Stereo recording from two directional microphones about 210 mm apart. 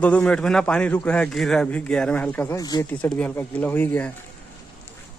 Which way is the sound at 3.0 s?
5° left (ahead or behind).